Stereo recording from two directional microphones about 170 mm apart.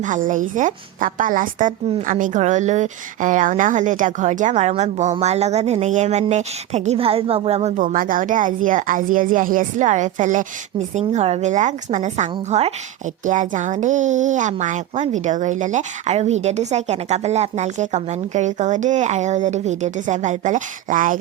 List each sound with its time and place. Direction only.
0.0 s a woman's voice: 50° right (ahead or behind)